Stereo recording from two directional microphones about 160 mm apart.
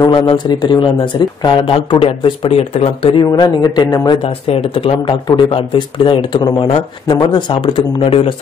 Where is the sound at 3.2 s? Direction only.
25° left (ahead or behind).